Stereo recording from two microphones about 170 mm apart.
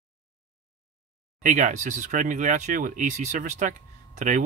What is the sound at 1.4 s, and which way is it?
Speech, 50° right (ahead or behind).